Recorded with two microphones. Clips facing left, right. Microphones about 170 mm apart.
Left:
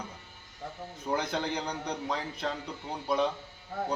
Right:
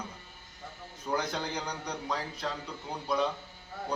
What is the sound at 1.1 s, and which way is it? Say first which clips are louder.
Speech: left 2 dB; 25° left (ahead or behind).